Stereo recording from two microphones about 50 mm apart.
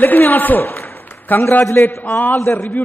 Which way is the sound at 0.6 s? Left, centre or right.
Left.